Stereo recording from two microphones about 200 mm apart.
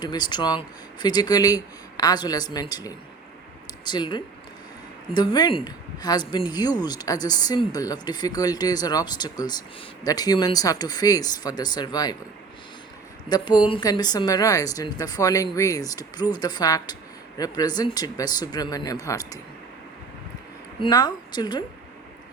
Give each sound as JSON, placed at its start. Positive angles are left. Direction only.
{"t": 0.0, "sound": "speech", "side_deg": 20}
{"t": 13.2, "sound": "speech", "side_deg": 20}
{"t": 20.8, "sound": "speech", "side_deg": 20}